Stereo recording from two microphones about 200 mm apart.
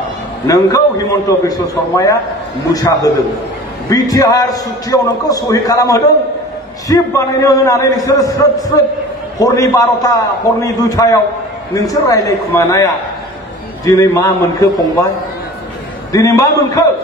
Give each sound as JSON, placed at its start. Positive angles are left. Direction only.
{"t": 0.5, "sound": "a man's voice", "side_deg": 15}
{"t": 9.4, "sound": "a man's voice", "side_deg": 15}
{"t": 16.1, "sound": "a man's voice", "side_deg": 15}